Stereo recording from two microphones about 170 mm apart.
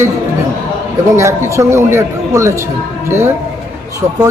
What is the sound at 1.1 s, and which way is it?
A man's voice, 15° right (ahead or behind).